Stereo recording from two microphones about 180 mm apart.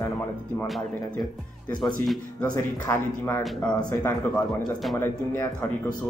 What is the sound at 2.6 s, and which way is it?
Speech, 10° left (ahead or behind).